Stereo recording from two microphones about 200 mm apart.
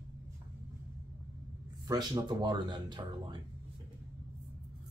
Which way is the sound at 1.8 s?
20° right (ahead or behind).